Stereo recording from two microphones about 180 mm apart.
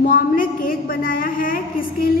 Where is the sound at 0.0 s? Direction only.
50° left (ahead or behind).